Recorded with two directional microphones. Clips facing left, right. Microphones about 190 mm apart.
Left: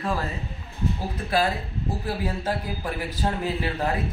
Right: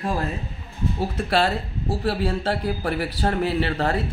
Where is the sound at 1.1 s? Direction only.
80° right.